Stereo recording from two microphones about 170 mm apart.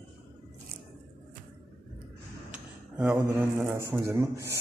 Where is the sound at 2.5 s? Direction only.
10° right (ahead or behind).